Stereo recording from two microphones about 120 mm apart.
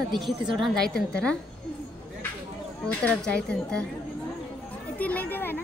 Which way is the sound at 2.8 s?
10° left (ahead or behind).